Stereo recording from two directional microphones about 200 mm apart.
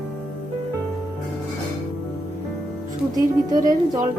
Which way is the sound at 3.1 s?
20° right (ahead or behind).